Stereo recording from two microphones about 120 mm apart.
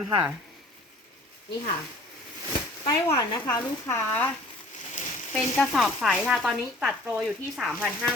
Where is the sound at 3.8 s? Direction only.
20° left (ahead or behind).